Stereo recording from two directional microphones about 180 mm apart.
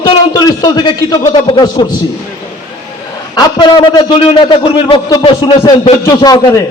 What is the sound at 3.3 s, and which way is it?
A man's voice, 25° left (ahead or behind).